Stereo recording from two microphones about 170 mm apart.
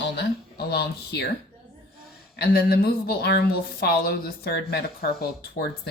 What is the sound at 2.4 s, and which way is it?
Speech, 65° left (ahead or behind).